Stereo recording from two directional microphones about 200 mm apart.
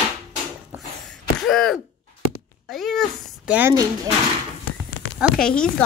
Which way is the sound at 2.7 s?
Centre (ahead or behind).